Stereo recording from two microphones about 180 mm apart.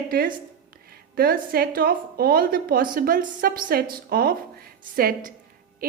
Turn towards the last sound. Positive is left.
turn(degrees=-50)  # may be behind; listen again after turning